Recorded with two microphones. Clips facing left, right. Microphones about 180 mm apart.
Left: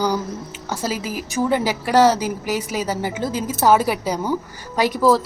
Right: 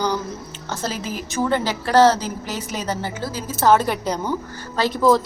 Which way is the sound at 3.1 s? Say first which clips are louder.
Left 4 dB; 20° left (ahead or behind).